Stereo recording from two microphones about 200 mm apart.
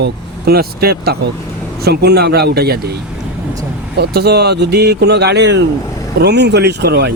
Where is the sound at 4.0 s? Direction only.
55° right (ahead or behind).